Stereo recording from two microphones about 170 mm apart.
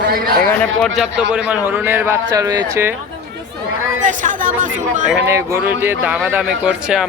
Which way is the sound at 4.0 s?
50° right (ahead or behind).